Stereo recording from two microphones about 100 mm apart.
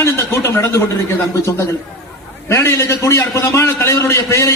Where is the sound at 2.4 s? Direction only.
25° left (ahead or behind).